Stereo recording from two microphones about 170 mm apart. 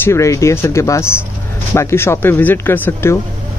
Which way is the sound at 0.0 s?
15° left (ahead or behind).